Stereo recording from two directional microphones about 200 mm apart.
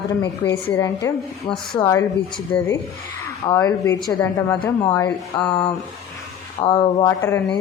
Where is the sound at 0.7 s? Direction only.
15° left (ahead or behind).